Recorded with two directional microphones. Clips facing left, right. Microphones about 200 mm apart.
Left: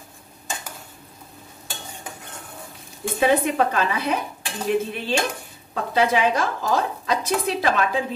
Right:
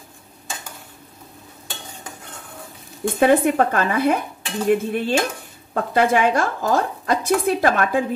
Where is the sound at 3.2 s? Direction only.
50° right (ahead or behind).